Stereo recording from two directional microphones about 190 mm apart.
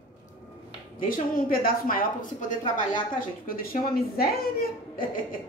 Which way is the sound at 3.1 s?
50° left (ahead or behind).